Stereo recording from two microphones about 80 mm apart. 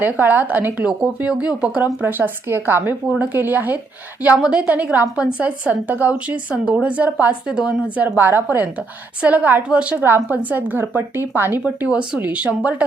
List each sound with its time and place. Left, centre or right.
0.0 s a woman's voice: right
11.9 s a woman's voice: centre